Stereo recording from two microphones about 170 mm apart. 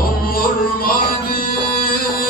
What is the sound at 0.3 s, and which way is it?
Music, 60° left (ahead or behind).